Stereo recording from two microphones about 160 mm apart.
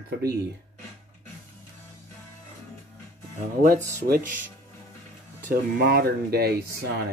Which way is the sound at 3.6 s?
55° right (ahead or behind).